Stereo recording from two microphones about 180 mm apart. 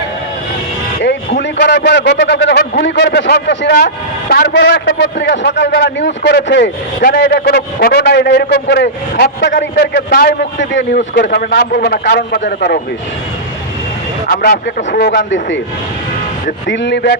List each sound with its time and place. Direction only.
0.9 s a man's voice: 65° left (ahead or behind); by 11.0 s 85° left
11.2 s a man's voice: 70° left (ahead or behind)
14.3 s speech: 55° left (ahead or behind)
15.3 s speech: 85° left
16.6 s a man's voice: 80° left